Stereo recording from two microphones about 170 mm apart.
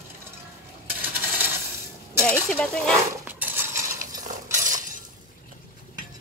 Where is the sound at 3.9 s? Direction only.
50° right (ahead or behind).